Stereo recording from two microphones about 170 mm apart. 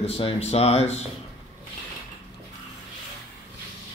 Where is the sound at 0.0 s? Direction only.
35° left (ahead or behind).